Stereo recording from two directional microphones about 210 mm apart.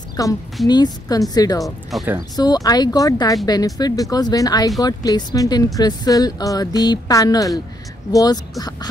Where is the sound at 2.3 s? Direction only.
20° left (ahead or behind).